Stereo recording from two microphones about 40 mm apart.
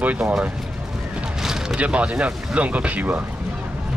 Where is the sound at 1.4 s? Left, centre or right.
Centre.